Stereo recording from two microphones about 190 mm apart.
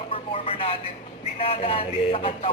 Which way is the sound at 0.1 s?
30° left (ahead or behind).